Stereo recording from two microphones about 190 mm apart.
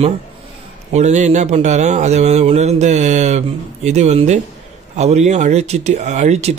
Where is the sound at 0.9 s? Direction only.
35° right (ahead or behind).